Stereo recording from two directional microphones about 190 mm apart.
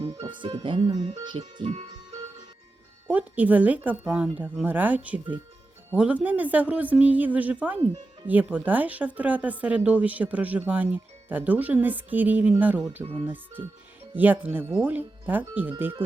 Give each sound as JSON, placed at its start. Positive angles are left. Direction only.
{"t": 0.2, "sound": "speech", "side_deg": -25}
{"t": 3.1, "sound": "speech", "side_deg": -10}